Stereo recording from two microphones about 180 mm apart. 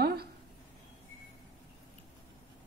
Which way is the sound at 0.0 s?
60° right (ahead or behind).